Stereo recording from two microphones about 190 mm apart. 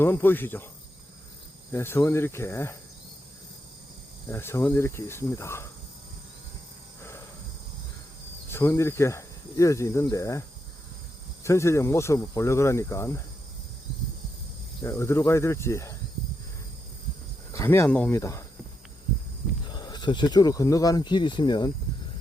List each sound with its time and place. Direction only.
0.0 s speech: 10° left (ahead or behind)
1.7 s speech: 10° left (ahead or behind)
4.3 s speech: 10° left (ahead or behind)
8.4 s speech: 15° left (ahead or behind)
11.4 s speech: 15° left (ahead or behind)
14.8 s speech: 15° left (ahead or behind)
17.5 s speech: 15° left (ahead or behind)
19.7 s speech: 20° left (ahead or behind)